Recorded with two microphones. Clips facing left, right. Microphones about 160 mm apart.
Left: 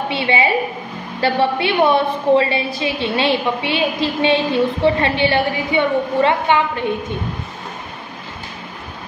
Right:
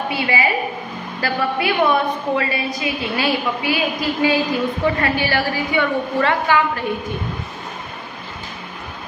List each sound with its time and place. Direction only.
0.1 s a woman's voice: 25° left (ahead or behind)